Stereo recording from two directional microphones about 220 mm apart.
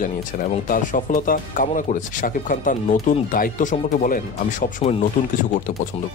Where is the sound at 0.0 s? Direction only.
35° left (ahead or behind).